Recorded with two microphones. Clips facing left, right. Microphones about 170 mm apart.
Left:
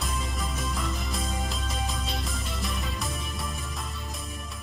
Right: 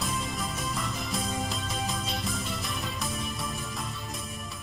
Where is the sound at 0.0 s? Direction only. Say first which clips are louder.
Right 1 dB; centre (ahead or behind).